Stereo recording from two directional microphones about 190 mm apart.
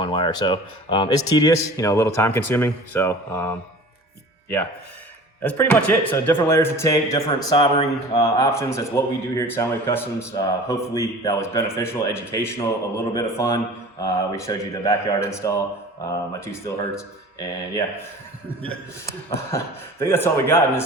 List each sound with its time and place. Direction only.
0.0 s a man's voice: 25° left (ahead or behind)
5.4 s a man's voice: 10° left (ahead or behind); by 7.9 s 30° left (ahead or behind)
8.1 s a man's voice: 15° left (ahead or behind)
19.5 s a man's voice: 15° left (ahead or behind)